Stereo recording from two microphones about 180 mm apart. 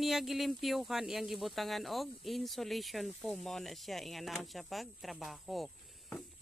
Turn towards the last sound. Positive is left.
turn(degrees=0)  # may be behind; listen again after turning